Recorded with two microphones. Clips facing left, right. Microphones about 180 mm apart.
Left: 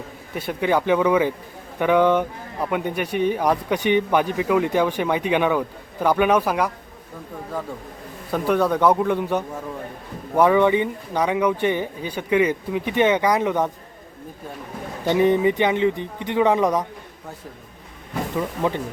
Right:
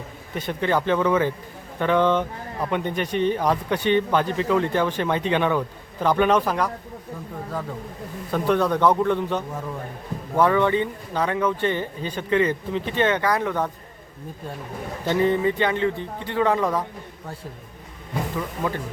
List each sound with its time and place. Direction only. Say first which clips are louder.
0.3 s a man's voice: left 2 dB; 10° left (ahead or behind)
8.3 s a man's voice: left 1 dB; 5° left (ahead or behind)
15.0 s a man's voice: left 3 dB; 15° left (ahead or behind)
18.3 s speech: left 6 dB; 20° left (ahead or behind)